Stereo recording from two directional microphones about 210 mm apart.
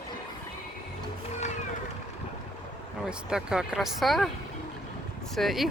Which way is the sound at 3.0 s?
5° right (ahead or behind).